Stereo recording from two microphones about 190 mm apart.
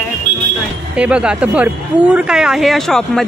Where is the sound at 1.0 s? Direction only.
5° right (ahead or behind).